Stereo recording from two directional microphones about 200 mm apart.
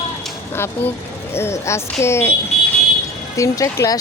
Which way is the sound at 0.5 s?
10° left (ahead or behind).